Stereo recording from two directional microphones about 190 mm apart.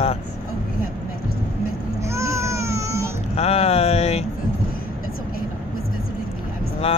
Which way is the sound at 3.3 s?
35° left (ahead or behind).